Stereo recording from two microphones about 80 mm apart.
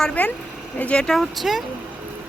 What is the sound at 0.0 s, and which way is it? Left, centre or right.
Speech, centre.